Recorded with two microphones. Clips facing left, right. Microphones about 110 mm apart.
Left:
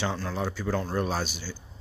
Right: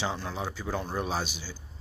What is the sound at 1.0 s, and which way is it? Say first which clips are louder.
Speech: left 2 dB; 5° right (ahead or behind).